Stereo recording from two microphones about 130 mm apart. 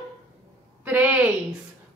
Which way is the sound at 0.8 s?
10° right (ahead or behind).